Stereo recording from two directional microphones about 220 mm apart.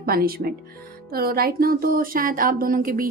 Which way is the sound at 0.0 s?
45° right (ahead or behind).